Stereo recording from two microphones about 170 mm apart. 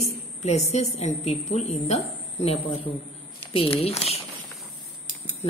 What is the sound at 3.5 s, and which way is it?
Speech, 30° left (ahead or behind).